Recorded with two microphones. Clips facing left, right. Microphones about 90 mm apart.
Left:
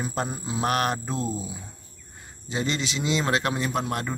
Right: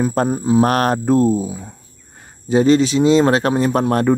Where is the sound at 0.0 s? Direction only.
45° right (ahead or behind).